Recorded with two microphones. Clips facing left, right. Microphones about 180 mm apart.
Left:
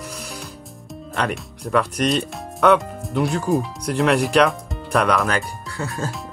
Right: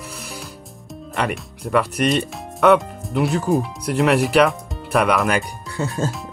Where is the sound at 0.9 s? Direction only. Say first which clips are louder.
Right 1 dB; 5° right (ahead or behind).